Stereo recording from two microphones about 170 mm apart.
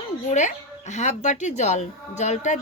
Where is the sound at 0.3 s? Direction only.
45° left (ahead or behind).